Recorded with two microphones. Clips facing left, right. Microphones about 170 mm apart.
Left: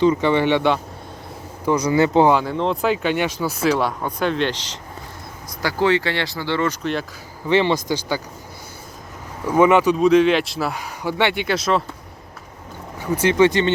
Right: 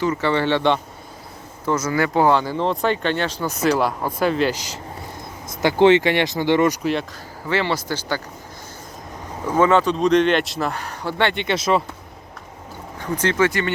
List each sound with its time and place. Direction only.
0.0 s speech: 15° left (ahead or behind)
2.3 s speech: centre (ahead or behind)
5.5 s speech: 25° right (ahead or behind)
7.4 s speech: 20° left (ahead or behind)
9.6 s speech: 15° left (ahead or behind); by 11.8 s centre (ahead or behind)
13.0 s speech: 10° left (ahead or behind)
13.4 s speech: 20° left (ahead or behind)